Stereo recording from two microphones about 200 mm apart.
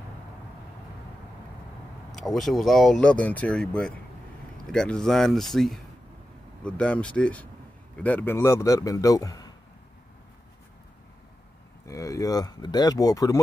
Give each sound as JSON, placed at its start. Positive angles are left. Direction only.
{"t": 2.1, "sound": "speech", "side_deg": 0}
{"t": 11.8, "sound": "speech", "side_deg": 15}